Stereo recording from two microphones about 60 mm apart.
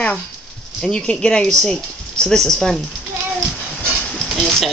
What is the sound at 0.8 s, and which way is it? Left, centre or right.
Female singing, centre.